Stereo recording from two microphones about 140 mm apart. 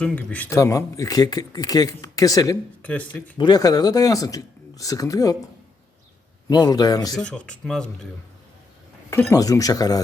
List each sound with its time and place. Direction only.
0.0 s speech: 10° left (ahead or behind)
0.5 s speech: 25° left (ahead or behind)
2.8 s speech: 10° left (ahead or behind)
3.3 s speech: 30° left (ahead or behind)
6.5 s speech: 30° left (ahead or behind)
7.2 s speech: 5° left (ahead or behind)
9.0 s speech: 20° left (ahead or behind)